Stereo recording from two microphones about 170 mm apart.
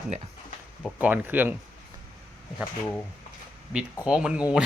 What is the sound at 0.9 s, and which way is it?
Speech, 10° right (ahead or behind).